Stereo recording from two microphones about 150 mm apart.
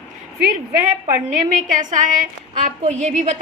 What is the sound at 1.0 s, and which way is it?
A woman's voice, 55° right (ahead or behind).